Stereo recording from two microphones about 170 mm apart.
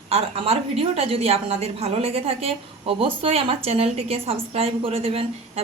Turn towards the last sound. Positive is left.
turn(degrees=-35)  # may be behind; listen again after turning